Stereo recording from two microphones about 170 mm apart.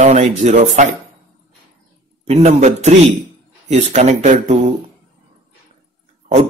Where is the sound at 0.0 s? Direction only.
45° right (ahead or behind).